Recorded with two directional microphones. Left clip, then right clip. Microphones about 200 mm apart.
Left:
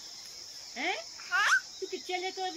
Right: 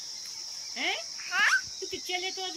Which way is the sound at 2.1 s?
5° right (ahead or behind).